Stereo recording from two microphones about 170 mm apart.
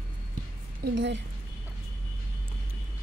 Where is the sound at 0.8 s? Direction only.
90° right.